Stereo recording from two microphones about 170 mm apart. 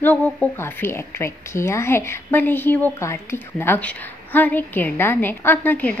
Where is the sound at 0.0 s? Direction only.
10° left (ahead or behind).